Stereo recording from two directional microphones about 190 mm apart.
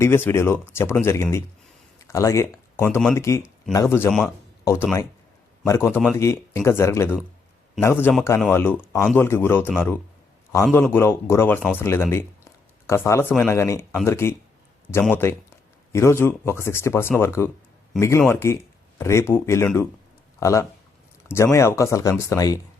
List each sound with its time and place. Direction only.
0.0 s speech: 15° left (ahead or behind)